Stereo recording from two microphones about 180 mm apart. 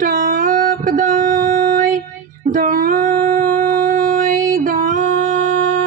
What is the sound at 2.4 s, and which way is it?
Music, 45° right (ahead or behind).